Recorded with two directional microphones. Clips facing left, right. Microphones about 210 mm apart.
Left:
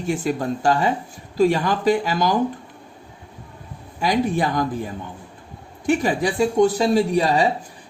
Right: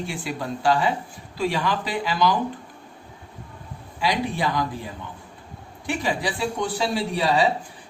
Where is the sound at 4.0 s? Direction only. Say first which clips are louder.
Left 5 dB; 45° left (ahead or behind).